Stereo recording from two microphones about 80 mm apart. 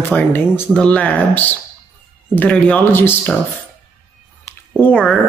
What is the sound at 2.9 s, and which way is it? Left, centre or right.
Speech, left.